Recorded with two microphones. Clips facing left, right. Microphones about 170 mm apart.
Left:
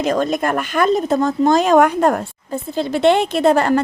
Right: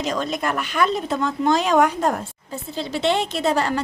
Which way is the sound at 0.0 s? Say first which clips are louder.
Left 6 dB; 50° left (ahead or behind).